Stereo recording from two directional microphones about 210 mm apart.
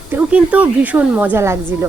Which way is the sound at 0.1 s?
5° right (ahead or behind).